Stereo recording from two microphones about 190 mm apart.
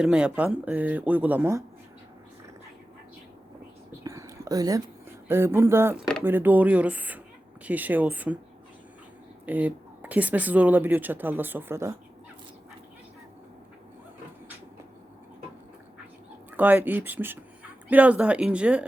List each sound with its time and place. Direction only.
0.0 s speech: 5° right (ahead or behind)
4.0 s whispering: 15° right (ahead or behind)
5.3 s speech: 15° right (ahead or behind)
9.5 s speech: 10° right (ahead or behind)
16.5 s speech: 10° right (ahead or behind)